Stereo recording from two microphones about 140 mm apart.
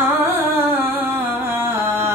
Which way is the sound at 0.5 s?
15° right (ahead or behind).